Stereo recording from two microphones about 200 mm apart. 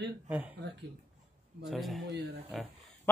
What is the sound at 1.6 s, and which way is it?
Speech, centre (ahead or behind).